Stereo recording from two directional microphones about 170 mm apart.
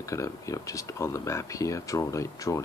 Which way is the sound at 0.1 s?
20° left (ahead or behind).